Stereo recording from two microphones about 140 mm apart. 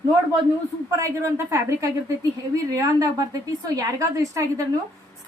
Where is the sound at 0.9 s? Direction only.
20° right (ahead or behind).